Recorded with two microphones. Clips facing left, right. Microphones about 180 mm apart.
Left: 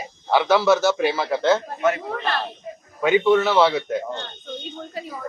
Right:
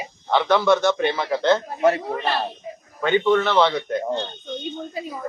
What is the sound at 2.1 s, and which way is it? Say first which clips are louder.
Speech: right 2 dB; 10° right (ahead or behind).